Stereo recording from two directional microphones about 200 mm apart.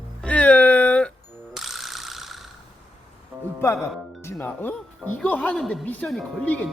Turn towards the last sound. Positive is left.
turn(degrees=5)  # may be behind; listen again after turning